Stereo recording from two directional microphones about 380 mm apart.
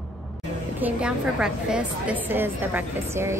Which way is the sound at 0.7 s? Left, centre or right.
Centre.